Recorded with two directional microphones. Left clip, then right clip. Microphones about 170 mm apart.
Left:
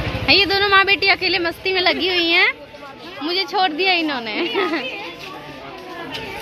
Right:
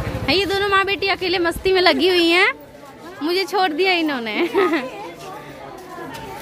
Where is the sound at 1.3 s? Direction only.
40° right (ahead or behind).